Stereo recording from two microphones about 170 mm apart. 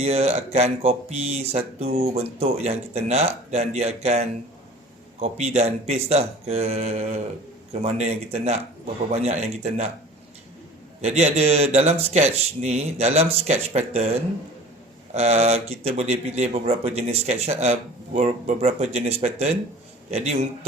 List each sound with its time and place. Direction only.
0.0 s speech: 35° right (ahead or behind)
11.0 s speech: 40° right (ahead or behind)
15.1 s a man's voice: 40° right (ahead or behind)